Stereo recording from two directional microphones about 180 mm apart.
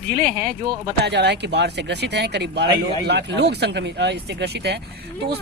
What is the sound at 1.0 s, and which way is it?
Speech, 70° right (ahead or behind).